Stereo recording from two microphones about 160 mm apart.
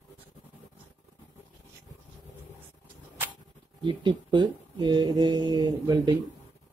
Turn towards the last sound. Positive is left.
turn(degrees=-25)  # may be behind; listen again after turning